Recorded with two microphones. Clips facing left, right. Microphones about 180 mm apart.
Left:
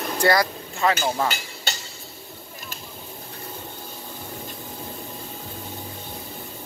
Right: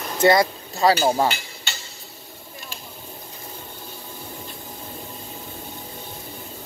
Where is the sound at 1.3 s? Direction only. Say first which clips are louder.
Left 2 dB; 40° left (ahead or behind).